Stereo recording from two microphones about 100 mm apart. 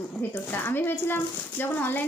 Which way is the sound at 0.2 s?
20° left (ahead or behind).